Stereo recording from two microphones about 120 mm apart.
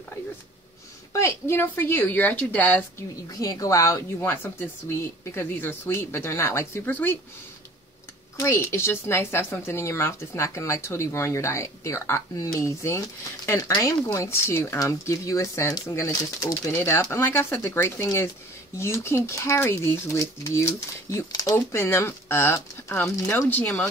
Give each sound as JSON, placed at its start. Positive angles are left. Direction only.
{"t": 1.1, "sound": "speech", "side_deg": 20}
{"t": 3.3, "sound": "speech", "side_deg": 30}
{"t": 8.4, "sound": "speech", "side_deg": 20}
{"t": 21.5, "sound": "speech", "side_deg": 20}